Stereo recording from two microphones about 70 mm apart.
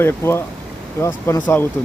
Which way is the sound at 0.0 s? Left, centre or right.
Left.